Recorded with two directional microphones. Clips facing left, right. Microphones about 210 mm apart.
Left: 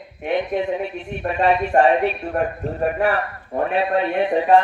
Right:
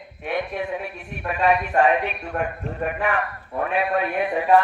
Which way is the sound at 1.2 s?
30° left (ahead or behind).